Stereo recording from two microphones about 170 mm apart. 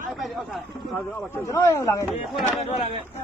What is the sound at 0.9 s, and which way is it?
Speech, 15° left (ahead or behind).